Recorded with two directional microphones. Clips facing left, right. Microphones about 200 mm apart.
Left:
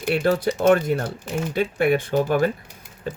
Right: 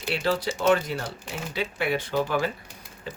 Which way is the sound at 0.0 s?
50° left (ahead or behind).